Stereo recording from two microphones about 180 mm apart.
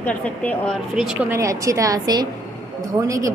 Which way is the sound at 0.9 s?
5° right (ahead or behind).